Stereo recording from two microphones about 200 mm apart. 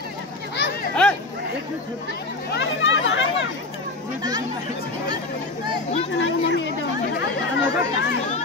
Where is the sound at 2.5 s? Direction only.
65° left (ahead or behind).